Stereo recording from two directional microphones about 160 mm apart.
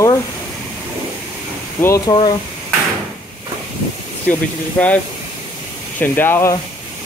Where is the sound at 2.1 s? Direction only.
25° left (ahead or behind).